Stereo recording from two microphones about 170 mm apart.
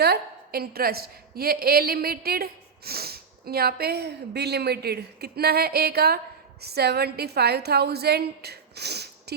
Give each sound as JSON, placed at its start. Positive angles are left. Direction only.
{"t": 0.0, "sound": "a woman's voice", "side_deg": -65}